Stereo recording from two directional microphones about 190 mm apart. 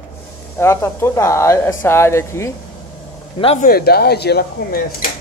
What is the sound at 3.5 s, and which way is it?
Speech, 50° left (ahead or behind).